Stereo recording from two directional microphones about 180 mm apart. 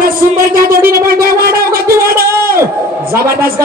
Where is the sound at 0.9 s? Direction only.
55° right (ahead or behind).